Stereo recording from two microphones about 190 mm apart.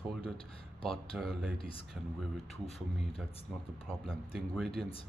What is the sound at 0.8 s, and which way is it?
Speech, centre (ahead or behind).